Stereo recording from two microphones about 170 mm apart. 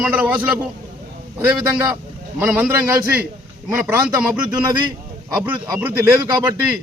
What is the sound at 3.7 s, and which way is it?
Speech, 10° right (ahead or behind).